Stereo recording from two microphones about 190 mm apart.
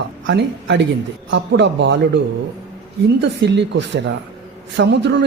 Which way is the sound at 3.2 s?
65° right (ahead or behind).